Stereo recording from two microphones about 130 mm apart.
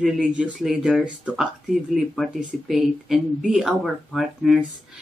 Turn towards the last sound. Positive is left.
turn(degrees=0)  # may be behind; listen again after turning